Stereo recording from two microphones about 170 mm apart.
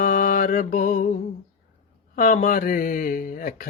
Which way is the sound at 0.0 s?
50° left (ahead or behind).